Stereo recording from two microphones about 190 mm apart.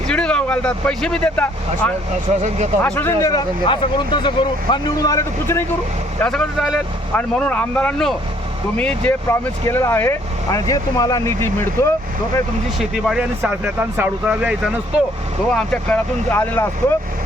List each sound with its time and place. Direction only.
0.1 s speech: 5° left (ahead or behind)
2.3 s speech: 35° right (ahead or behind)
2.8 s speech: 10° left (ahead or behind)
12.8 s speech: centre (ahead or behind)
15.5 s speech: 5° left (ahead or behind)